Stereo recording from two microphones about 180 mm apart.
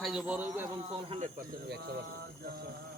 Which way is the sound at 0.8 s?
35° right (ahead or behind).